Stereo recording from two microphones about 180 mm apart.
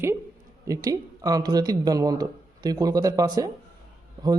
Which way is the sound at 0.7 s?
20° right (ahead or behind).